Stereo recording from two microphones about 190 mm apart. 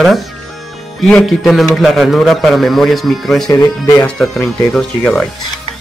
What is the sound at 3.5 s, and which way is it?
Speech, 20° left (ahead or behind).